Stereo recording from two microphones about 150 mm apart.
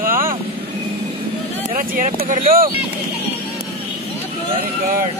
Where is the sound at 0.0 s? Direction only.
70° right (ahead or behind).